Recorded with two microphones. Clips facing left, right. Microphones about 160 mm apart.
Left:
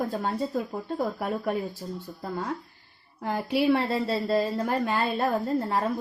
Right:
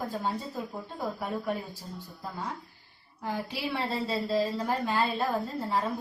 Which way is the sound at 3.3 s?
60° left (ahead or behind).